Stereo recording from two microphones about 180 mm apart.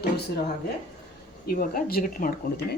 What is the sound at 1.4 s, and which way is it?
Speech, 55° left (ahead or behind).